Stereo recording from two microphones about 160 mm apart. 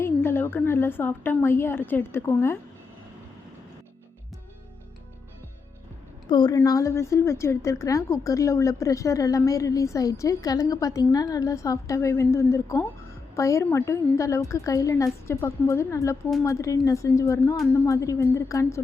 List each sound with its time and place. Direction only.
0.0 s a woman's voice: 15° left (ahead or behind)
6.2 s a woman's voice: 25° left (ahead or behind)